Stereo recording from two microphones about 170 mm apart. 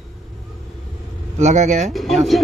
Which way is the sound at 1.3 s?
45° right (ahead or behind).